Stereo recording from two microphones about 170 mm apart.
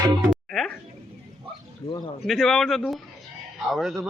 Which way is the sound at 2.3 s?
Centre (ahead or behind).